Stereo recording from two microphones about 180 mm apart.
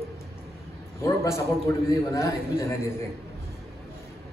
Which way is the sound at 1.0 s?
15° left (ahead or behind).